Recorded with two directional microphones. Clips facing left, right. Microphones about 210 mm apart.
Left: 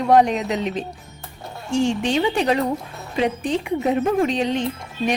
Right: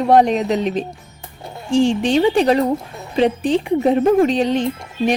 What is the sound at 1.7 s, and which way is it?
A woman's voice, 35° right (ahead or behind).